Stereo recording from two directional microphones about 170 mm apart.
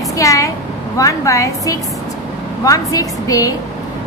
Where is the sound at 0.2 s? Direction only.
20° left (ahead or behind).